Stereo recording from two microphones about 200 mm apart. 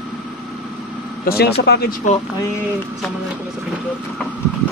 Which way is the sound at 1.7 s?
50° left (ahead or behind).